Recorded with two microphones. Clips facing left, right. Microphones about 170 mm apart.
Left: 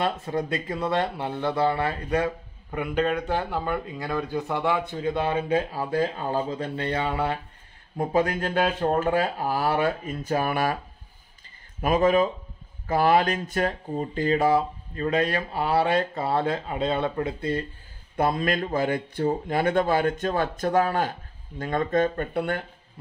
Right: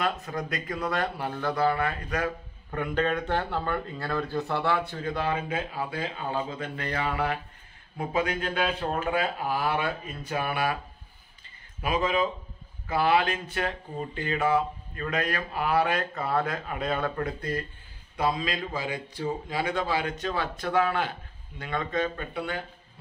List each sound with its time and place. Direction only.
0.0 s speech: 30° left (ahead or behind)
2.7 s speech: 10° left (ahead or behind); by 7.3 s 30° left (ahead or behind)
8.0 s speech: 40° left (ahead or behind)
11.8 s speech: 45° left (ahead or behind); by 17.6 s 25° left (ahead or behind)
18.1 s speech: 55° left (ahead or behind)